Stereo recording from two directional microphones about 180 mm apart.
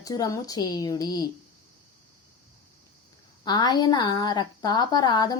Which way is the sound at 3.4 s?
25° left (ahead or behind).